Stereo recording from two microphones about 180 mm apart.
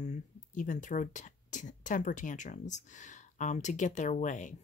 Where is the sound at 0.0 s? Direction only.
45° left (ahead or behind).